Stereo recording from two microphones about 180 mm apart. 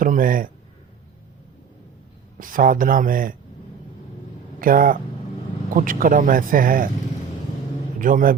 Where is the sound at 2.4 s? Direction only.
50° right (ahead or behind).